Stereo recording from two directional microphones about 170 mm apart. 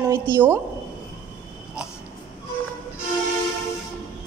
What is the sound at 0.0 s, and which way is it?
Speech, 15° right (ahead or behind).